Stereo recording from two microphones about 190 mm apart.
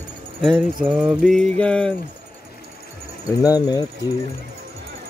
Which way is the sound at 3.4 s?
20° left (ahead or behind).